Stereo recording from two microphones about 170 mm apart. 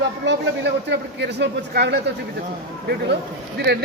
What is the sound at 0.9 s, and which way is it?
Speech, 85° right.